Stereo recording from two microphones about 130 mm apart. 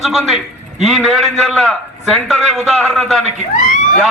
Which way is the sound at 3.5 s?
80° left.